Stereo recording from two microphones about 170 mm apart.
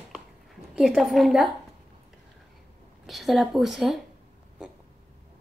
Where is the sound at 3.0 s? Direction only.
Centre (ahead or behind).